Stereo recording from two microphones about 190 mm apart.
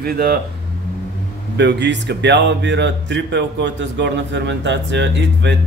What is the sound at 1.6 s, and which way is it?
Speech, 65° right (ahead or behind).